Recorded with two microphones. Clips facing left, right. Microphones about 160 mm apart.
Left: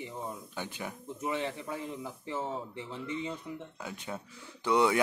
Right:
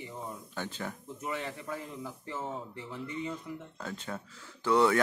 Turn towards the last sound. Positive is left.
turn(degrees=15)  # may be behind; listen again after turning